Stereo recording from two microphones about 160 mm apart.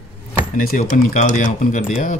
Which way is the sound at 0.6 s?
70° left (ahead or behind).